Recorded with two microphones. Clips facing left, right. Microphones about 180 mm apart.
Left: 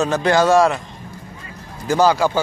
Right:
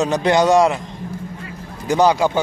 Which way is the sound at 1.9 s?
20° right (ahead or behind).